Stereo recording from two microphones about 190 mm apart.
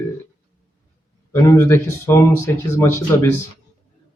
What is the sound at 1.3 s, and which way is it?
Speech, 15° left (ahead or behind).